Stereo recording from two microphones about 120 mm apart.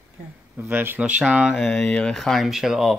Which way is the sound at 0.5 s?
15° right (ahead or behind).